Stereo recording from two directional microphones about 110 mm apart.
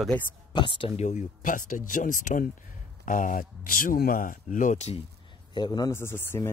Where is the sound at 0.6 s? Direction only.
50° left (ahead or behind).